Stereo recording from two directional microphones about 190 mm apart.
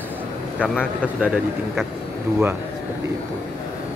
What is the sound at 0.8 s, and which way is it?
Speech, 5° right (ahead or behind).